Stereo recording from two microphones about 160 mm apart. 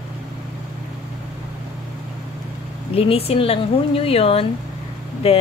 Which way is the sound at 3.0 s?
35° left (ahead or behind).